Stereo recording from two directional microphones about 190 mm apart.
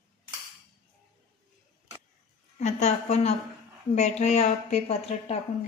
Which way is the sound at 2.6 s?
35° left (ahead or behind).